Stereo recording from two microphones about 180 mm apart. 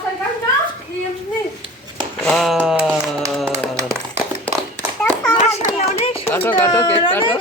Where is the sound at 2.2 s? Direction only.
Centre (ahead or behind).